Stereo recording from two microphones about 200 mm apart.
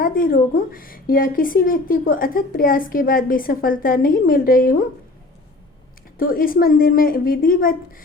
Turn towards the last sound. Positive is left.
turn(degrees=45)  # may be behind; listen again after turning